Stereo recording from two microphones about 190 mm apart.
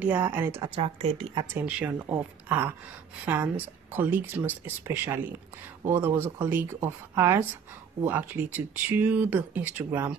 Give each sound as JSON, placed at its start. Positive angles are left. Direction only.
{"t": 0.0, "sound": "speech", "side_deg": -10}
{"t": 0.7, "sound": "speech", "side_deg": -30}
{"t": 1.5, "sound": "speech", "side_deg": -5}